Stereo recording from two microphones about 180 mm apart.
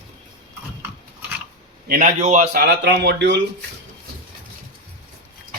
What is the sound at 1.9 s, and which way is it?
Speech, 45° right (ahead or behind).